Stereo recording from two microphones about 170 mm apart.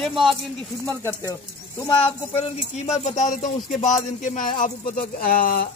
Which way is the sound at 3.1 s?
45° left (ahead or behind).